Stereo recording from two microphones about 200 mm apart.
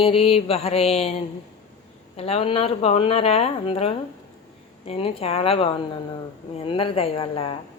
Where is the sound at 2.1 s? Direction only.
30° left (ahead or behind).